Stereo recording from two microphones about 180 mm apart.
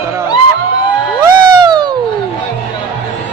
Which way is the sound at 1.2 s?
25° right (ahead or behind).